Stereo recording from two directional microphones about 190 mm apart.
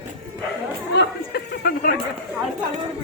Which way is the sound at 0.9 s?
55° left (ahead or behind).